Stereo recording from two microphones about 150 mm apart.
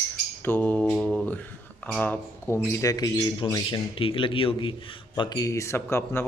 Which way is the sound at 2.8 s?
25° left (ahead or behind).